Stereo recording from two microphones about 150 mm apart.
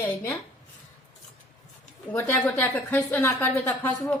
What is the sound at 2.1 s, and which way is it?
A woman's voice, 10° left (ahead or behind).